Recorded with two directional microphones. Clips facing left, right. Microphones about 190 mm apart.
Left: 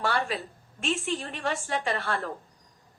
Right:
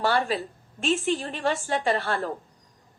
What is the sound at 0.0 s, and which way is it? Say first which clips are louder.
A woman's voice: right 4 dB; 35° right (ahead or behind).